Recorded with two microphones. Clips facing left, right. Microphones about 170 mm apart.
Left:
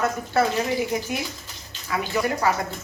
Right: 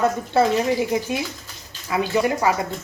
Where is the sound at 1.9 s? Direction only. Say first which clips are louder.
Right 4 dB; 20° right (ahead or behind).